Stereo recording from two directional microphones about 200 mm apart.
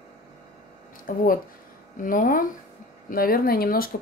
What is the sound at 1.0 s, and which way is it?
Speech, 45° left (ahead or behind).